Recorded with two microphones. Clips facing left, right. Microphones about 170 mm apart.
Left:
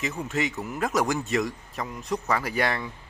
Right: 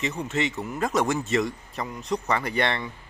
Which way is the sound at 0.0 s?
Centre (ahead or behind).